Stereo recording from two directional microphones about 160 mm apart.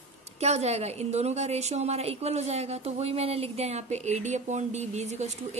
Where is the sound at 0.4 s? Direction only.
40° right (ahead or behind).